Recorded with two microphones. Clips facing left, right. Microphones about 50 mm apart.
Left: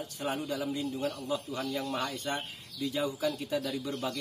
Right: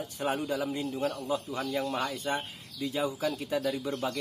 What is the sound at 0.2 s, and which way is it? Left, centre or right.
A man's voice, right.